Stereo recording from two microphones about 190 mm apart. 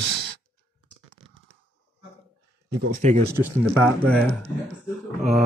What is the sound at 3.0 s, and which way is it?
Speech, 40° right (ahead or behind).